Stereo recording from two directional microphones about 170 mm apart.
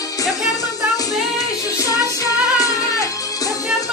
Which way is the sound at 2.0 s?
20° left (ahead or behind).